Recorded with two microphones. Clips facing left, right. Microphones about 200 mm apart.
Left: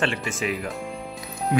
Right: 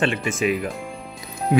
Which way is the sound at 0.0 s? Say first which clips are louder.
Right 4 dB; 20° right (ahead or behind).